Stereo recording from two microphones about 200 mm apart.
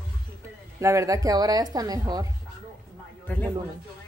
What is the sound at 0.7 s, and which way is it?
Speech, 15° right (ahead or behind).